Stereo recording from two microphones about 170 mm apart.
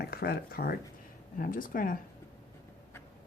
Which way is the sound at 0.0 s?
65° left (ahead or behind).